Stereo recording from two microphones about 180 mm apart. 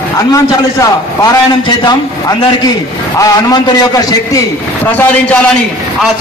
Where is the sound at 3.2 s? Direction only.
20° left (ahead or behind).